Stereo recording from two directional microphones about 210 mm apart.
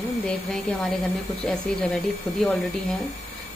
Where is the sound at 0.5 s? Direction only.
Centre (ahead or behind).